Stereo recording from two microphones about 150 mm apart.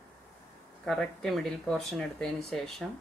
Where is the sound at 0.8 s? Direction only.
5° left (ahead or behind).